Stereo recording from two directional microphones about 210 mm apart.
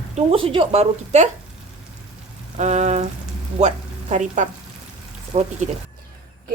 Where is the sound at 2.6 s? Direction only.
35° right (ahead or behind).